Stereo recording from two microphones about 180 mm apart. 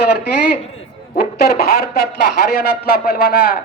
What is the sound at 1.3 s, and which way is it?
Speech, 60° left (ahead or behind).